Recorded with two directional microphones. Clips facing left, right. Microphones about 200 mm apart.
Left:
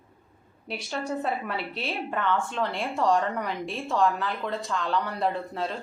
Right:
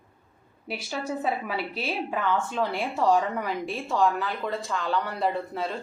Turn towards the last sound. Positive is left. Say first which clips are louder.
# right 1 dB
turn(degrees=0)  # may be behind; listen again after turning